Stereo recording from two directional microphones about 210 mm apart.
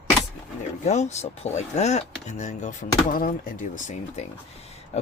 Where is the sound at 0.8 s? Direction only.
35° left (ahead or behind).